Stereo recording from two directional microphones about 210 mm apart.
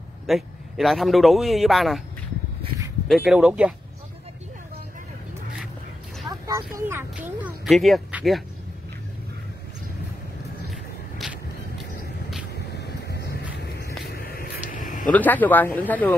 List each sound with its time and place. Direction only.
0.3 s a man's voice: centre (ahead or behind)
3.1 s a man's voice: centre (ahead or behind)
6.3 s vehicle: 15° right (ahead or behind)
6.9 s a man's voice: 10° right (ahead or behind)
10.7 s vehicle: centre (ahead or behind)
12.7 s vehicle: 50° left (ahead or behind)
15.1 s speech: 10° left (ahead or behind)